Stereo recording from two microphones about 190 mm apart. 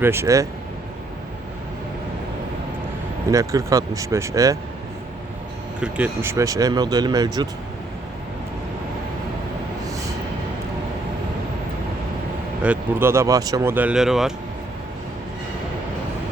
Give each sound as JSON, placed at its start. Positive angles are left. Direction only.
{"t": 0.0, "sound": "speech", "side_deg": -15}
{"t": 3.3, "sound": "speech", "side_deg": -15}
{"t": 5.8, "sound": "speech", "side_deg": -10}
{"t": 12.6, "sound": "speech", "side_deg": -10}